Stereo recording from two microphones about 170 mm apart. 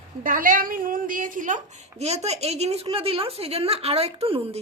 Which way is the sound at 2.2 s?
40° right (ahead or behind).